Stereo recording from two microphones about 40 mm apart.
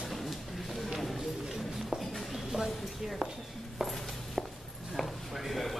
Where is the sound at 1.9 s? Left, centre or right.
Centre.